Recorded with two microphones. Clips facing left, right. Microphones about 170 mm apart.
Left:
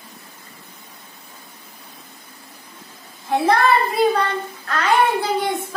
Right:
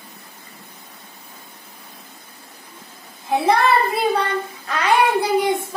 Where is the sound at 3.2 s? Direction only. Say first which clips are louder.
Even; 10° right (ahead or behind).